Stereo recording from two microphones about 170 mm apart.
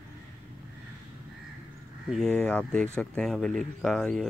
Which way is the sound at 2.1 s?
5° left (ahead or behind).